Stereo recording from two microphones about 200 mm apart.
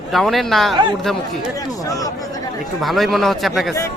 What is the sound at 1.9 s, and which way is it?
Speech, 15° left (ahead or behind).